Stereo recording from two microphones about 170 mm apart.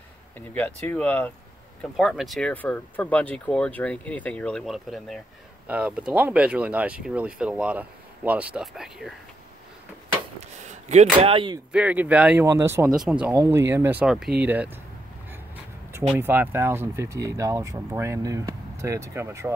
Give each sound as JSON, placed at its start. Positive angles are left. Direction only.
{"t": 0.6, "sound": "speech", "side_deg": 10}
{"t": 10.9, "sound": "speech", "side_deg": -40}
{"t": 11.7, "sound": "speech", "side_deg": -10}
{"t": 12.9, "sound": "speech", "side_deg": -5}
{"t": 13.3, "sound": "speech", "side_deg": -15}
{"t": 16.2, "sound": "speech", "side_deg": -15}